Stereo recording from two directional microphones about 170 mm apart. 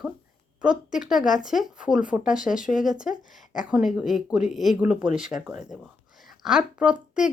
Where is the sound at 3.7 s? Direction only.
5° right (ahead or behind).